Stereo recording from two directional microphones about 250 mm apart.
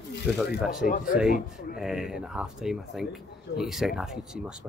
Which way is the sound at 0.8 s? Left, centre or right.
Left.